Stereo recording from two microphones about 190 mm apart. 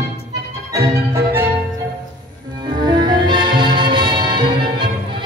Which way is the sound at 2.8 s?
25° right (ahead or behind).